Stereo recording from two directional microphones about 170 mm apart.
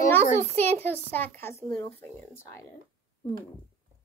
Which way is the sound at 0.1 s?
10° left (ahead or behind).